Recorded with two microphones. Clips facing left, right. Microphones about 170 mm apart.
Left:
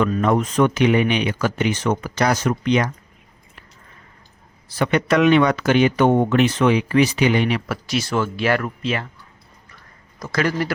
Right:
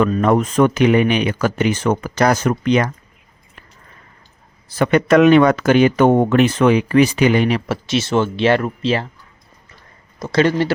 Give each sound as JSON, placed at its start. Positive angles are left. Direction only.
{"t": 0.0, "sound": "speech", "side_deg": -45}
{"t": 4.7, "sound": "speech", "side_deg": -50}
{"t": 7.7, "sound": "speech", "side_deg": -25}
{"t": 10.2, "sound": "speech", "side_deg": -25}